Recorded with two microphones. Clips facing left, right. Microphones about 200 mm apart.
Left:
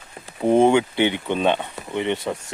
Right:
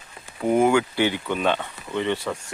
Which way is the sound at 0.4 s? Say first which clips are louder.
Left 3 dB; 25° left (ahead or behind).